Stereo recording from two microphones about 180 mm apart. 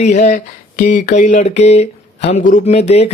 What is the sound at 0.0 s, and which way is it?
Speech, 40° left (ahead or behind).